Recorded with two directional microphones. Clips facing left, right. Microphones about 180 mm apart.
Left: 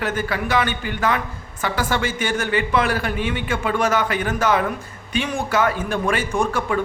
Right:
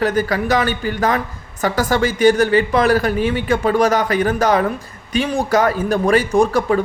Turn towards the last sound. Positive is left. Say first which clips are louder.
# right 6 dB
turn(degrees=-35)  # may be behind; listen again after turning